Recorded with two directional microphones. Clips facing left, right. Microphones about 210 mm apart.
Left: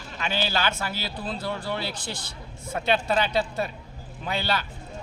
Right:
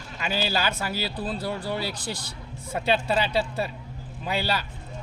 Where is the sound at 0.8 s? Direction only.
35° right (ahead or behind).